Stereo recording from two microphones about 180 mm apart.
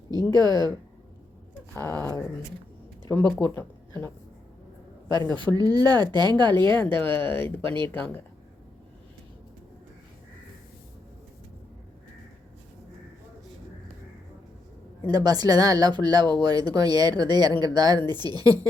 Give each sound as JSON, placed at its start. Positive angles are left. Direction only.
{"t": 0.3, "sound": "speech", "side_deg": -25}
{"t": 2.0, "sound": "speech", "side_deg": 15}
{"t": 5.0, "sound": "speech", "side_deg": -25}
{"t": 6.7, "sound": "speech", "side_deg": 10}
{"t": 15.0, "sound": "speech", "side_deg": -20}